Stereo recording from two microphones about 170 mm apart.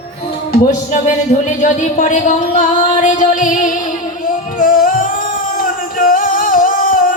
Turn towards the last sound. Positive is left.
turn(degrees=55)  # may be behind; listen again after turning